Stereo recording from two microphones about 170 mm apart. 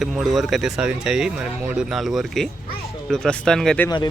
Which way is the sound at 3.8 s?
25° left (ahead or behind).